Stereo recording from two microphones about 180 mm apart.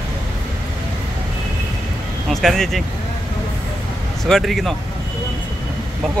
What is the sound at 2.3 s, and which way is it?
Speech, centre (ahead or behind).